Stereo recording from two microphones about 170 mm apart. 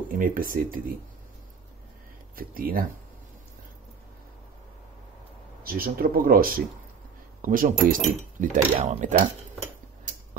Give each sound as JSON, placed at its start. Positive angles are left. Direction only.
{"t": 0.2, "sound": "speech", "side_deg": -55}
{"t": 2.3, "sound": "speech", "side_deg": -55}
{"t": 5.6, "sound": "speech", "side_deg": -60}
{"t": 8.7, "sound": "speech", "side_deg": -40}